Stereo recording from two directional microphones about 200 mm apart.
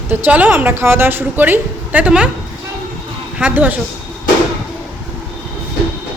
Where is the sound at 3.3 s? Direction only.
5° right (ahead or behind).